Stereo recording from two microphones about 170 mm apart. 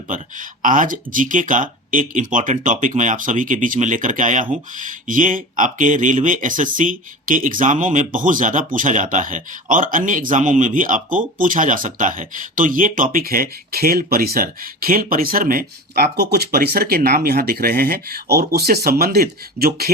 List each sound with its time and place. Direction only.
0.1 s speech: 50° right (ahead or behind)